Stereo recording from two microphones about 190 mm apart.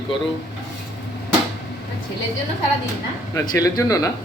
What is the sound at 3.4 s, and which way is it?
Speech, 20° left (ahead or behind).